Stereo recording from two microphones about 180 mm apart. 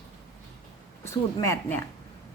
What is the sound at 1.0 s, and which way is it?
Speech, 15° left (ahead or behind).